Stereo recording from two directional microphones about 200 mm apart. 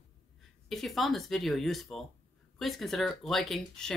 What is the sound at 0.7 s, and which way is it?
Speech, centre (ahead or behind).